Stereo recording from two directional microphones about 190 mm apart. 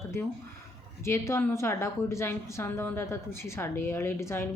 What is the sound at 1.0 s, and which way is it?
Speech, 15° left (ahead or behind).